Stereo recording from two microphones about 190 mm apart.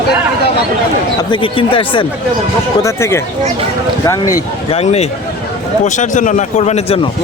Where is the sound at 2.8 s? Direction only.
15° left (ahead or behind).